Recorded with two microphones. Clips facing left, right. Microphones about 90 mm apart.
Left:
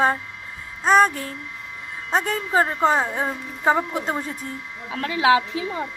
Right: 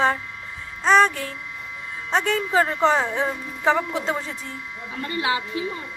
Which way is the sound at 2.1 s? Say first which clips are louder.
Even; 40° left (ahead or behind).